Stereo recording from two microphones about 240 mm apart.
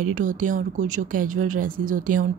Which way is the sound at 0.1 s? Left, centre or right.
Right.